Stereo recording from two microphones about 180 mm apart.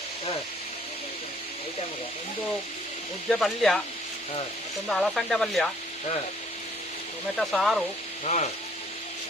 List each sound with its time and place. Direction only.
3.2 s speech: centre (ahead or behind)
4.9 s speech: centre (ahead or behind)
7.3 s speech: centre (ahead or behind)
8.2 s frying: 40° left (ahead or behind)